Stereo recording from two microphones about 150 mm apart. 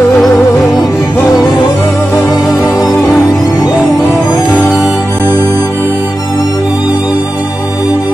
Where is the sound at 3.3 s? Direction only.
25° left (ahead or behind).